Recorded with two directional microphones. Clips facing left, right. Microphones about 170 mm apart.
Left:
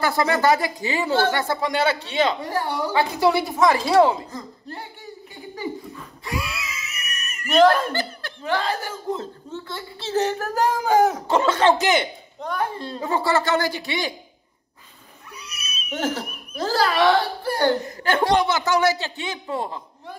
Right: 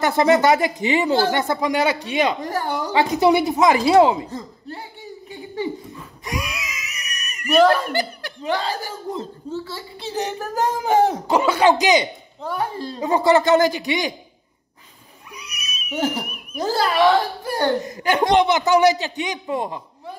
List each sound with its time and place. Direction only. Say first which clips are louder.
0.0 s speech: right 4 dB; 20° right (ahead or behind)
6.2 s screaming: right 1 dB; 20° right (ahead or behind)
8.5 s speech: even; 35° right (ahead or behind)
9.9 s a sound: left 4 dB; 15° right (ahead or behind)
11.2 s a man's voice: right 2 dB; 10° right (ahead or behind)
15.3 s cat: right 1 dB; 15° right (ahead or behind)
17.6 s speech: right 1 dB; 20° right (ahead or behind)